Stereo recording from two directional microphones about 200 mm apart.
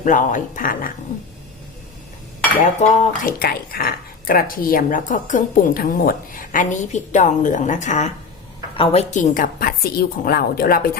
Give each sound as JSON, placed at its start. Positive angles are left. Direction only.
{"t": 0.0, "sound": "speech", "side_deg": 40}
{"t": 2.8, "sound": "speech", "side_deg": 35}
{"t": 3.2, "sound": "speech", "side_deg": 45}